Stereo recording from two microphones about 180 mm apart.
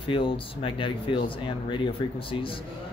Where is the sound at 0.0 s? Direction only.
30° left (ahead or behind).